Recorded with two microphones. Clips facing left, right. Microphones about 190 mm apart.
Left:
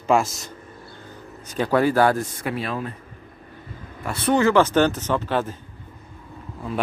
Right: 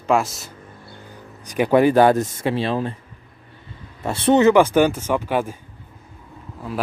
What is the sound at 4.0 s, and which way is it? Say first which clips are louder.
Speech: right 4 dB; 25° right (ahead or behind).